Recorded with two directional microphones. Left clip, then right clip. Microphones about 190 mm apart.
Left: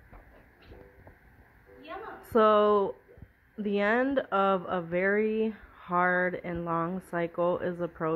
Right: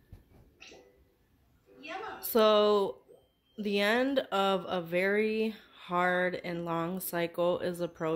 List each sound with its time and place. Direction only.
2.3 s speech: 25° right (ahead or behind)